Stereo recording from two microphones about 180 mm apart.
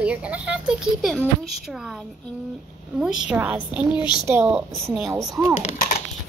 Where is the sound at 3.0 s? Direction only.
5° right (ahead or behind).